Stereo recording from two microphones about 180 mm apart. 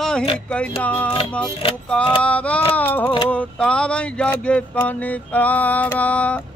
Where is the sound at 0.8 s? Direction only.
10° left (ahead or behind).